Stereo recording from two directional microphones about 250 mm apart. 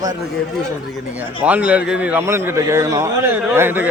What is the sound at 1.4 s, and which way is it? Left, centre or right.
A man's voice, centre.